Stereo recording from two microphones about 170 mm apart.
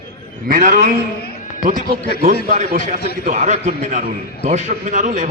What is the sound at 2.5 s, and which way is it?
Speech, 55° right (ahead or behind).